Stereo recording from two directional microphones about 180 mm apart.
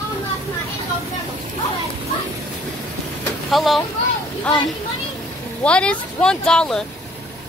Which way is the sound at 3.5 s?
Centre (ahead or behind).